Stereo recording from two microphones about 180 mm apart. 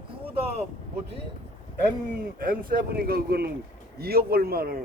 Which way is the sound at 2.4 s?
50° right (ahead or behind).